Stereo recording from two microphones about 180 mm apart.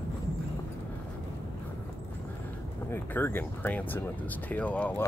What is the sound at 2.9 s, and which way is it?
Speech, 10° left (ahead or behind).